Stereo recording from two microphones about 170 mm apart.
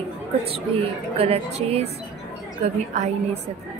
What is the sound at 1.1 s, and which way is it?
A woman's voice, 35° right (ahead or behind).